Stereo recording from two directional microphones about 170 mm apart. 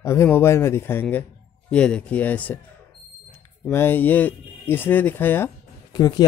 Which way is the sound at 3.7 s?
10° left (ahead or behind).